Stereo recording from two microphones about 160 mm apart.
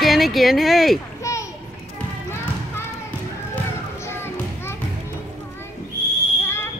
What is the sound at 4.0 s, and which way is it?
Children playing, 15° left (ahead or behind).